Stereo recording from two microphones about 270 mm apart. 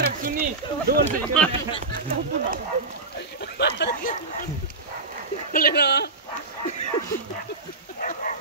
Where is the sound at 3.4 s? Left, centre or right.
Left.